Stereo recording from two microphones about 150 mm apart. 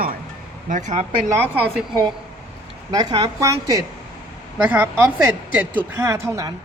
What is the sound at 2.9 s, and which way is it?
Speech, 25° right (ahead or behind).